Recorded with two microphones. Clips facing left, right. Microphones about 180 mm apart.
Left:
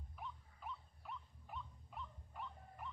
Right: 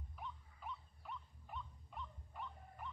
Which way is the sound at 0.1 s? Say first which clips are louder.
Even; centre (ahead or behind).